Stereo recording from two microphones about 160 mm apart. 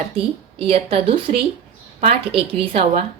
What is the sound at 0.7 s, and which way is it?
A woman's voice, 35° right (ahead or behind).